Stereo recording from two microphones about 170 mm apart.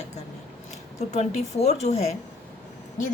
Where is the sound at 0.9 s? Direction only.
40° left (ahead or behind).